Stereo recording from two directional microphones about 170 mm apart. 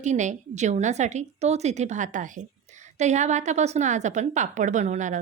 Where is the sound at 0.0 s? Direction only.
45° right (ahead or behind).